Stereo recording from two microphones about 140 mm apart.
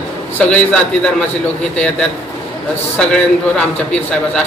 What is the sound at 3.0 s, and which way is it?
Speech, 5° left (ahead or behind).